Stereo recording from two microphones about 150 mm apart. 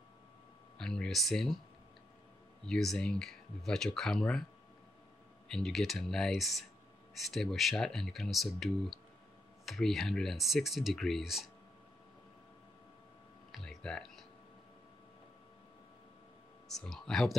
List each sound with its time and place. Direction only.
0.7 s speech: 5° left (ahead or behind)
2.6 s speech: 5° left (ahead or behind)
5.5 s speech: centre (ahead or behind)
13.5 s a sound: 5° left (ahead or behind)
16.6 s speech: centre (ahead or behind)